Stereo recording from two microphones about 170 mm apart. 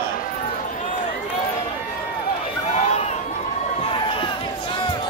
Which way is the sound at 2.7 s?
40° left (ahead or behind).